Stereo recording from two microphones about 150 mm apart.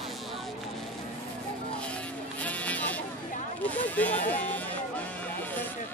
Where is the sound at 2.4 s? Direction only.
10° left (ahead or behind).